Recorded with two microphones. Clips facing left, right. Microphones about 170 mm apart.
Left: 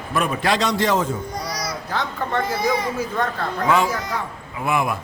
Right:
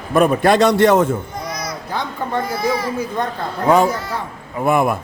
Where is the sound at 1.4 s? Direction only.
35° left (ahead or behind).